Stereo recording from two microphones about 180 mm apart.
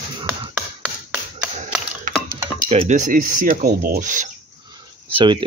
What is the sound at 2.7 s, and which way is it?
Speech, 40° right (ahead or behind).